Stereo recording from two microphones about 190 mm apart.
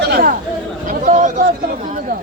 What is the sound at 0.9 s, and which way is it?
Chatter, 40° right (ahead or behind).